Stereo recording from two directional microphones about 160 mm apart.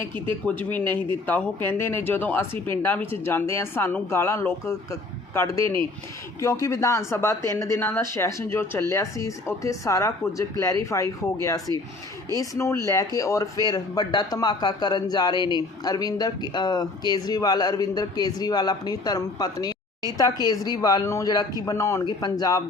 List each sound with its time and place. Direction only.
0.4 s speech: 10° left (ahead or behind); by 22.6 s 25° left (ahead or behind)